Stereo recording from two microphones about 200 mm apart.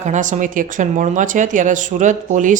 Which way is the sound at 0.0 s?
40° right (ahead or behind).